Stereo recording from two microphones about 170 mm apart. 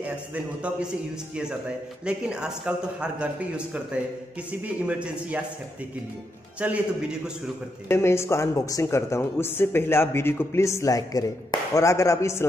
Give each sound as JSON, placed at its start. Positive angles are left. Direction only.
{"t": 0.0, "sound": "a man's voice", "side_deg": -10}
{"t": 6.6, "sound": "a man's voice", "side_deg": -10}
{"t": 7.9, "sound": "speech", "side_deg": 15}